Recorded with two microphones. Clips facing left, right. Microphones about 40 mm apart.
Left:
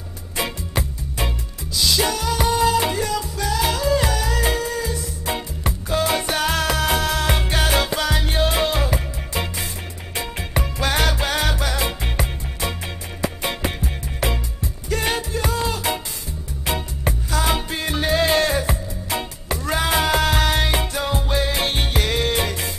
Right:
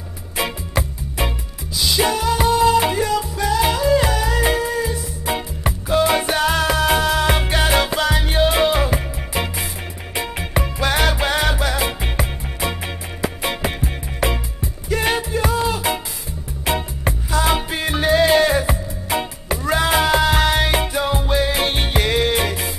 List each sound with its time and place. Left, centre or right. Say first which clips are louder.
0.4 s music: right 3 dB; centre